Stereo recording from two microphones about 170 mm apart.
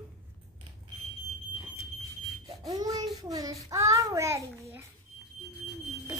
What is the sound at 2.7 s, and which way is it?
Child singing, 20° right (ahead or behind).